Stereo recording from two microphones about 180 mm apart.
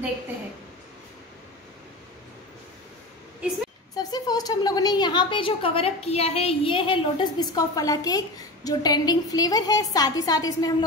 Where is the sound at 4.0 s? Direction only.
20° left (ahead or behind).